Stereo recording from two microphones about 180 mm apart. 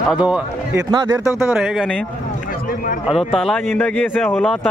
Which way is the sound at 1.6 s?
5° right (ahead or behind).